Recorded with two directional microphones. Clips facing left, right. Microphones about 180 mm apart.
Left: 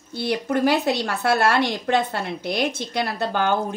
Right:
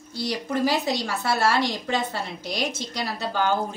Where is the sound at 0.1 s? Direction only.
55° left (ahead or behind).